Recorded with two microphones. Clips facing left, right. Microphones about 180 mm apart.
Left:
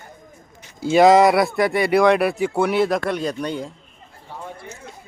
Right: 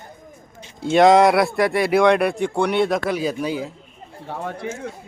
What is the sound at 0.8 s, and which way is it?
Speech, centre (ahead or behind).